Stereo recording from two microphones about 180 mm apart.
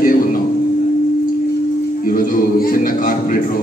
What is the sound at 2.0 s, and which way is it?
A man's voice, 50° left (ahead or behind).